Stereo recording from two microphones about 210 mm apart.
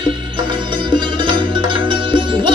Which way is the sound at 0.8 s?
20° right (ahead or behind).